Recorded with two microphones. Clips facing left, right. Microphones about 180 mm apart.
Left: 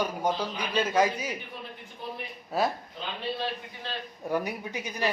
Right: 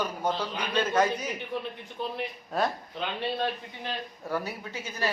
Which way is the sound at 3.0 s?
65° right (ahead or behind).